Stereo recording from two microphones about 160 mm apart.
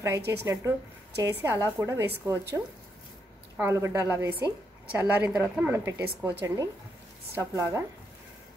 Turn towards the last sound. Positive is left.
turn(degrees=-20)  # may be behind; listen again after turning